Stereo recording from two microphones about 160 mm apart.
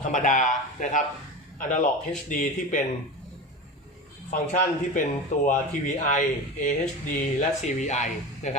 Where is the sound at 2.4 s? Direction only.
55° left (ahead or behind).